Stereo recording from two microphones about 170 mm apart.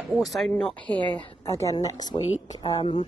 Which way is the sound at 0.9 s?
30° right (ahead or behind).